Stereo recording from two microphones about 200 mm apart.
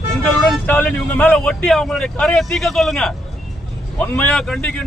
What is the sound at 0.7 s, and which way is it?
A man's voice, 10° left (ahead or behind).